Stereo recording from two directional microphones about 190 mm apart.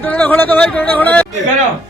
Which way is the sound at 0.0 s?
10° left (ahead or behind).